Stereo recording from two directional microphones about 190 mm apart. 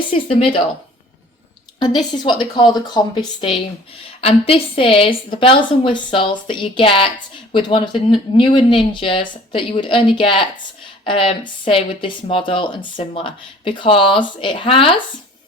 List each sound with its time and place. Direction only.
0.1 s speech: 30° left (ahead or behind)
1.8 s speech: 20° left (ahead or behind)